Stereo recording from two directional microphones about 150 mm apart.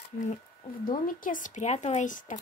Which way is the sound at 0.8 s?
65° left (ahead or behind).